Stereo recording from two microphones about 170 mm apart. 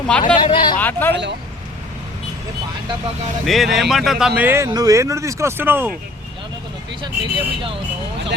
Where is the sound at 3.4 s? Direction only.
Centre (ahead or behind).